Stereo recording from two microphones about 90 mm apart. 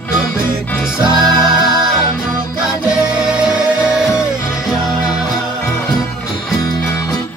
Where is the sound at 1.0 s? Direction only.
50° right (ahead or behind).